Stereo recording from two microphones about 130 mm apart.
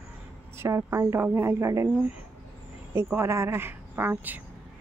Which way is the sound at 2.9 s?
20° right (ahead or behind).